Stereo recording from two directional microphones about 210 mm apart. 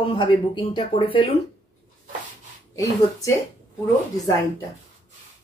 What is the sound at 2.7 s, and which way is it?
Speech, 15° left (ahead or behind).